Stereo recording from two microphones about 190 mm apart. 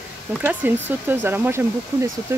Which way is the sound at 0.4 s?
10° right (ahead or behind).